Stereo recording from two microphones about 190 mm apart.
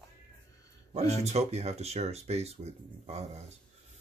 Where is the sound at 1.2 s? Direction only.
35° right (ahead or behind).